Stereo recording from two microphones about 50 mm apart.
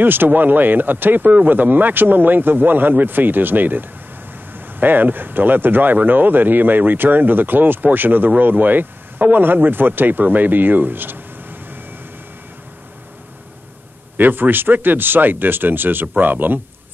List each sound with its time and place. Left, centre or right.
0.0 s speech: right
14.1 s speech: right